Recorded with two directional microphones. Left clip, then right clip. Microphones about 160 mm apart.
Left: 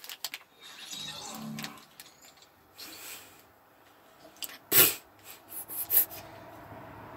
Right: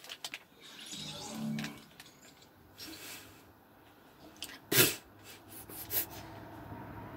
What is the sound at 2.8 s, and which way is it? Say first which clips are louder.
Snort: left 1 dB; 35° right (ahead or behind).